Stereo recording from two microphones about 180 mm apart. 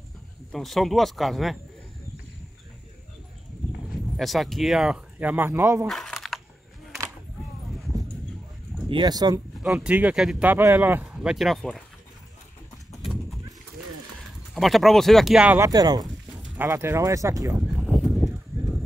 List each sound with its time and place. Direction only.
0.5 s speech: centre (ahead or behind)
3.7 s speech: centre (ahead or behind)
5.9 s a sound: centre (ahead or behind)
8.8 s speech: 25° right (ahead or behind)
9.6 s speech: 5° right (ahead or behind)
14.5 s speech: centre (ahead or behind)
15.7 s speech: 20° right (ahead or behind)